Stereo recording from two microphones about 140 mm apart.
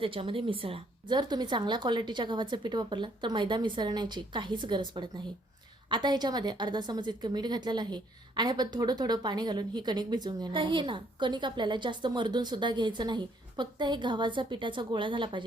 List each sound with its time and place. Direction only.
0.0 s a woman's voice: 40° right (ahead or behind)